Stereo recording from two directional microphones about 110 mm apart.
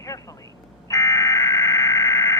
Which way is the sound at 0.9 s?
30° left (ahead or behind).